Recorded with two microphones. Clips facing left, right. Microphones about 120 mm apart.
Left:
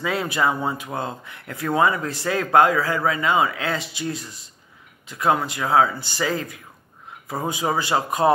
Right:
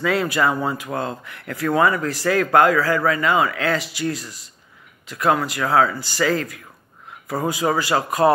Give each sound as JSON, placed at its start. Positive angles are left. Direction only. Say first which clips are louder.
{"t": 0.0, "sound": "a man's voice", "louder": "right 3 dB", "side_deg": 20}